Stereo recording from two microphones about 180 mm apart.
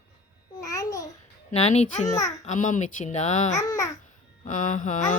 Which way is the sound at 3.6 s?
20° left (ahead or behind).